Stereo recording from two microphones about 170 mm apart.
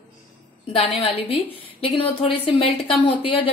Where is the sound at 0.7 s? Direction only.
35° left (ahead or behind).